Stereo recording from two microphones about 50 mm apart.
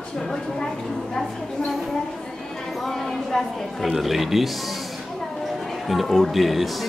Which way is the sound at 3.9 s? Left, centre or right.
Centre.